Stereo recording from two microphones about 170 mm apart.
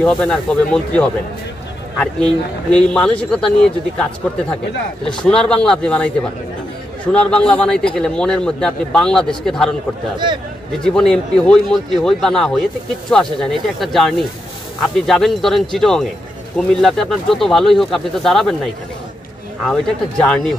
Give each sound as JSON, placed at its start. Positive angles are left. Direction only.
{"t": 0.0, "sound": "a man's voice", "side_deg": 5}
{"t": 10.1, "sound": "speech", "side_deg": -25}
{"t": 10.8, "sound": "a man's voice", "side_deg": 5}
{"t": 19.6, "sound": "a man's voice", "side_deg": 5}